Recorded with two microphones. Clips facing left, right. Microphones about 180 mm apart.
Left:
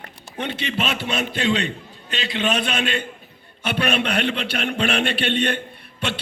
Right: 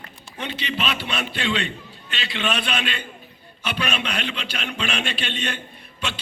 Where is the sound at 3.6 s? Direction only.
55° left (ahead or behind).